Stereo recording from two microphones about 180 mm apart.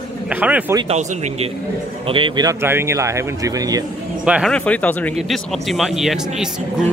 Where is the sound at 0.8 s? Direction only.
35° right (ahead or behind); by 3.8 s 20° right (ahead or behind).